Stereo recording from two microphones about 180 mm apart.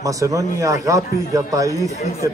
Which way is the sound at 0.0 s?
20° right (ahead or behind).